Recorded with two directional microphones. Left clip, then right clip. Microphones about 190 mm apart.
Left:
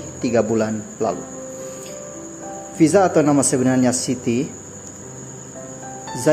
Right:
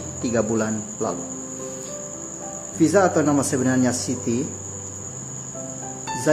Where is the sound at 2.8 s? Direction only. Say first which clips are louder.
Left 3 dB; 20° left (ahead or behind).